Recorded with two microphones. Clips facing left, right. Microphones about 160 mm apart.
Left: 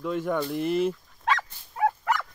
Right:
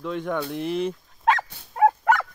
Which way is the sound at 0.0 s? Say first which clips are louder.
Even; 5° left (ahead or behind).